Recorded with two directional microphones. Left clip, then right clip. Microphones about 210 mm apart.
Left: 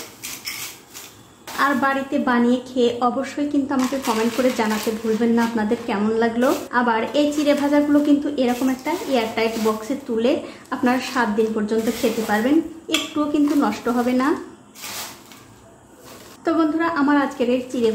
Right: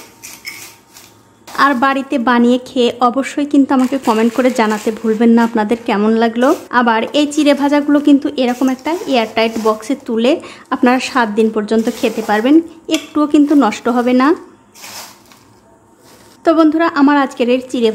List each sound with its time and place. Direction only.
1.6 s a woman's voice: 45° right (ahead or behind)
16.4 s a woman's voice: 45° right (ahead or behind)